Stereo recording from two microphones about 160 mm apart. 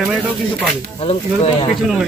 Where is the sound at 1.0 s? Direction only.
35° left (ahead or behind).